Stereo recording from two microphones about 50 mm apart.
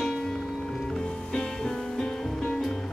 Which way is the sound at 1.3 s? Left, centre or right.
Centre.